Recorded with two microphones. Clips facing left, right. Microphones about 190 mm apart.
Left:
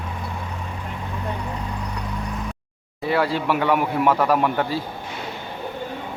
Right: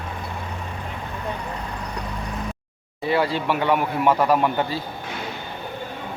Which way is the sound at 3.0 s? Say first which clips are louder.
Even; 5° left (ahead or behind).